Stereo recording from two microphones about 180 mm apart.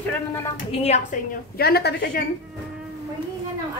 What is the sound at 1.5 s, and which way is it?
Speech, 65° left (ahead or behind).